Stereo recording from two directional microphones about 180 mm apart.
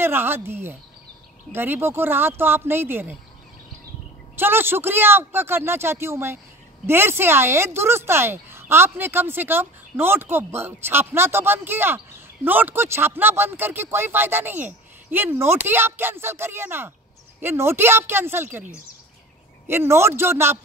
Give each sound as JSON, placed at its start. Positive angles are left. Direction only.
{"t": 0.0, "sound": "speech", "side_deg": -10}
{"t": 4.4, "sound": "speech", "side_deg": -10}
{"t": 19.7, "sound": "speech", "side_deg": -15}